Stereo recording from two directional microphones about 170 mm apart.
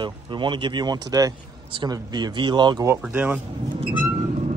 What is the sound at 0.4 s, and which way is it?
Speech, 25° right (ahead or behind).